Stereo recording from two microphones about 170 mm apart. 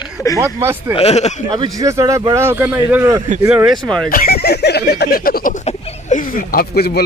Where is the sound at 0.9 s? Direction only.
40° left (ahead or behind).